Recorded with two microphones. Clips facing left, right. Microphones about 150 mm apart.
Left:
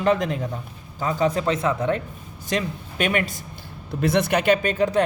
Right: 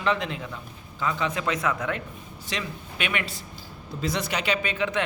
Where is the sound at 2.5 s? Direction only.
45° left (ahead or behind).